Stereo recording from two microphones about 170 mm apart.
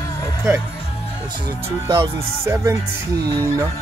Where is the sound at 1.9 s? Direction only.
15° right (ahead or behind).